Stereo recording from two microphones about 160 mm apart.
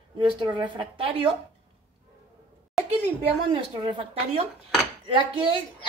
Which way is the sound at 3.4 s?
30° right (ahead or behind).